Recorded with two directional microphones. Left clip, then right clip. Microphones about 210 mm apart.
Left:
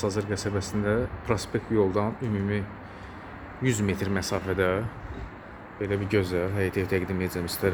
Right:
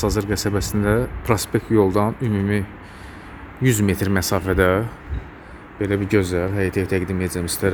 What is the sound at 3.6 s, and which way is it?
Speech, 40° right (ahead or behind).